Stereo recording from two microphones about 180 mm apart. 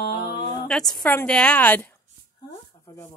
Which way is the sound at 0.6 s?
5° left (ahead or behind).